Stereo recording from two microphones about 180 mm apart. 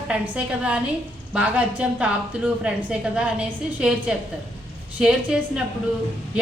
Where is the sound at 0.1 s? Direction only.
5° right (ahead or behind).